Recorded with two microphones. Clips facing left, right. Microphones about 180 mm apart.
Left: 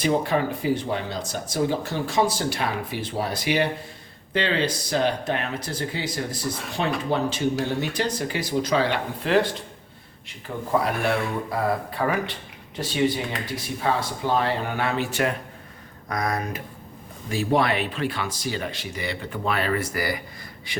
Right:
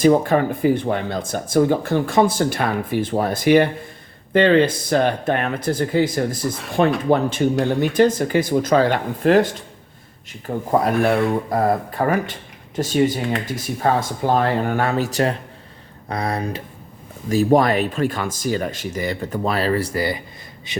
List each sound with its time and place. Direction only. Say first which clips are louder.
0.0 s speech: right 7 dB; 45° right (ahead or behind); by 16.6 s 30° right (ahead or behind)
17.2 s speech: right 7 dB; 40° right (ahead or behind); by 20.8 s 20° right (ahead or behind)